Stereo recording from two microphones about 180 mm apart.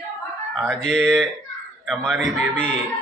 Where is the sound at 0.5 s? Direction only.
5° left (ahead or behind).